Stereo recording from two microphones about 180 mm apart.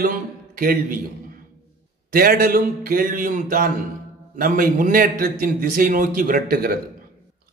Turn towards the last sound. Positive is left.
turn(degrees=-55)  # may be behind; listen again after turning